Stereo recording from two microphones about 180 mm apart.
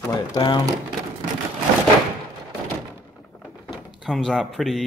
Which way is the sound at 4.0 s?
Centre (ahead or behind).